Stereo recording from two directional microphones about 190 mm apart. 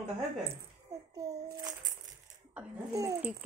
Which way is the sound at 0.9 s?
20° right (ahead or behind).